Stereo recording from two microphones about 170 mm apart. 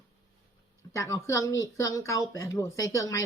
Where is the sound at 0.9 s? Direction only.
20° left (ahead or behind).